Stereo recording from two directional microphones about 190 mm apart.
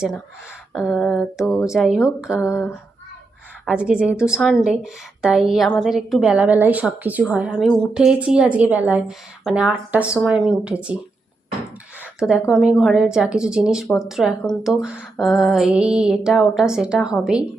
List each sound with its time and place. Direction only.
0.7 s a woman's voice: centre (ahead or behind)
3.7 s a woman's voice: 5° right (ahead or behind)
12.2 s a woman's voice: centre (ahead or behind)